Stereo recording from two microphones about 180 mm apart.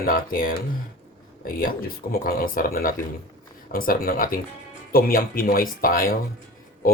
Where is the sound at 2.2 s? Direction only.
55° left (ahead or behind).